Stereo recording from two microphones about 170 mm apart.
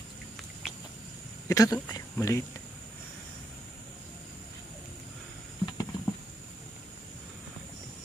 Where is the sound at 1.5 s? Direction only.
20° left (ahead or behind).